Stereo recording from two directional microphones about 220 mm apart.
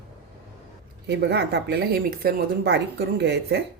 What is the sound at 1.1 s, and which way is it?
Speech, 50° right (ahead or behind).